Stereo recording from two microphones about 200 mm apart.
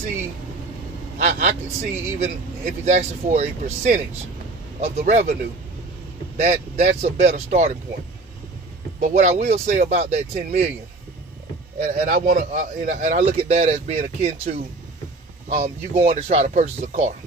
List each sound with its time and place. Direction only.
1.1 s a man's voice: 40° right (ahead or behind)
6.3 s a man's voice: 35° right (ahead or behind)
9.0 s a man's voice: 35° right (ahead or behind)
11.8 s a man's voice: 40° right (ahead or behind)
15.5 s a man's voice: 35° right (ahead or behind)